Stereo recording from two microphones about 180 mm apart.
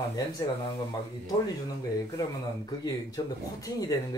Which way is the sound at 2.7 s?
20° left (ahead or behind).